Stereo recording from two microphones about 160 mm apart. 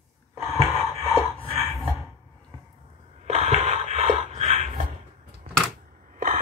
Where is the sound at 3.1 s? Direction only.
45° right (ahead or behind).